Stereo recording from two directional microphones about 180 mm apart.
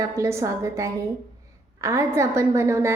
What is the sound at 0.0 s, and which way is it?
A woman's voice, 15° right (ahead or behind).